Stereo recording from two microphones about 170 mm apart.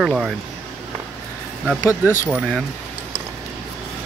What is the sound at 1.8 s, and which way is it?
Speech, 15° left (ahead or behind).